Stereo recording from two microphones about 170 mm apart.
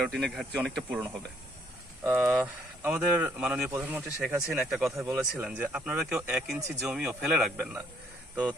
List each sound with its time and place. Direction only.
0.0 s speech: centre (ahead or behind)
4.9 s speech: 15° right (ahead or behind); by 7.7 s centre (ahead or behind)